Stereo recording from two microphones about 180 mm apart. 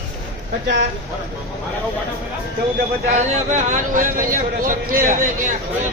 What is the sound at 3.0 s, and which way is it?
A man's voice, 40° right (ahead or behind).